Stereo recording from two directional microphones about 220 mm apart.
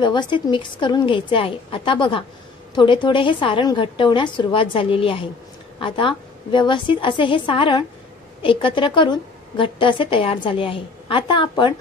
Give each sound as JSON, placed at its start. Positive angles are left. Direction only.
{"t": 0.0, "sound": "a woman's voice", "side_deg": 20}